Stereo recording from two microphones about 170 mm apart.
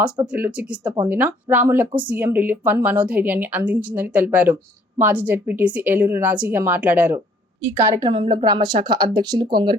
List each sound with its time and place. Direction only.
0.3 s a woman's voice: 10° right (ahead or behind)
7.9 s speech: 25° right (ahead or behind)